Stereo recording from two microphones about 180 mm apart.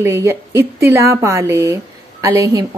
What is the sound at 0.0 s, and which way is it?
A woman's voice, 15° right (ahead or behind).